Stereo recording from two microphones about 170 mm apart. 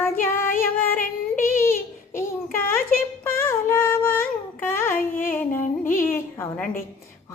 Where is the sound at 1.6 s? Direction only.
15° left (ahead or behind).